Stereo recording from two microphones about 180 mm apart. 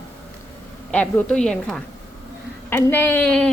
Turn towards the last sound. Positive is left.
turn(degrees=5)  # may be behind; listen again after turning